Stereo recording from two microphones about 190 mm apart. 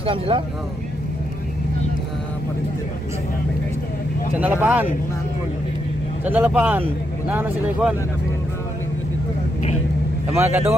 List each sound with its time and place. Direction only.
0.0 s speech: 30° right (ahead or behind)
4.4 s speech: 10° right (ahead or behind)
6.2 s speech: 10° right (ahead or behind)
10.3 s speech: 15° right (ahead or behind)